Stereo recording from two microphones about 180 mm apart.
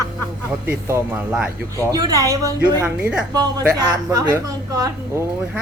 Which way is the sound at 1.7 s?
20° right (ahead or behind).